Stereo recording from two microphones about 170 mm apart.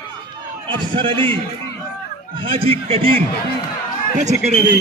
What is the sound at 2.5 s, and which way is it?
Speech, 35° right (ahead or behind).